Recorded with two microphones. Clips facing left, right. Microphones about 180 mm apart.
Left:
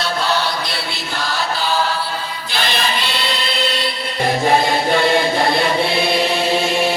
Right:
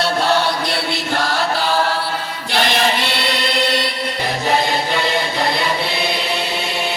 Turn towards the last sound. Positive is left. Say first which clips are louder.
# left 3 dB
turn(degrees=50)  # may be behind; listen again after turning